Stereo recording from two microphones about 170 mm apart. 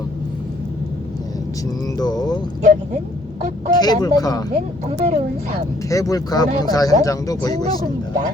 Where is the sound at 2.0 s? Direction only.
25° left (ahead or behind).